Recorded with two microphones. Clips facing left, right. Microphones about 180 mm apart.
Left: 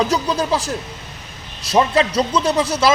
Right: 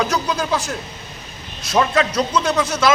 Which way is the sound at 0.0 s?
30° left (ahead or behind).